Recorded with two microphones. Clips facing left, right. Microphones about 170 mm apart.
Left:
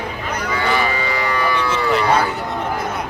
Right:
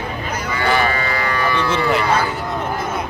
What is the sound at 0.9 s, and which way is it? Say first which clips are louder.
Livestock: even; 15° left (ahead or behind).